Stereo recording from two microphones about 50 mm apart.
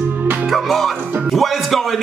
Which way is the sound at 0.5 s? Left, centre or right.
Centre.